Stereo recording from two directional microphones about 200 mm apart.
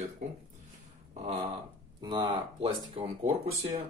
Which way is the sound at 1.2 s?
30° right (ahead or behind).